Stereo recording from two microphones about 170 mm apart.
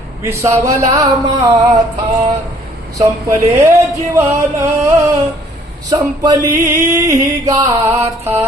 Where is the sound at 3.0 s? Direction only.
20° right (ahead or behind).